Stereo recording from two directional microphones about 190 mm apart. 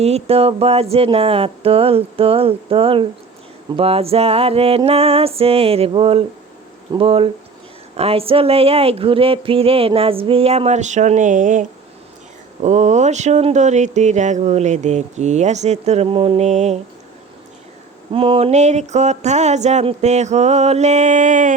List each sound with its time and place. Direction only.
0.0 s speech: 35° right (ahead or behind)
12.6 s speech: 40° right (ahead or behind)
18.1 s speech: 30° right (ahead or behind)